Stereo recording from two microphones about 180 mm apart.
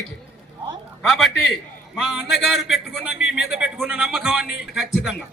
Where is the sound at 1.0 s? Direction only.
Centre (ahead or behind).